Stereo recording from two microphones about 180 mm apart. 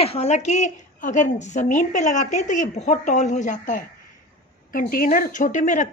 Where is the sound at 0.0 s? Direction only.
35° left (ahead or behind).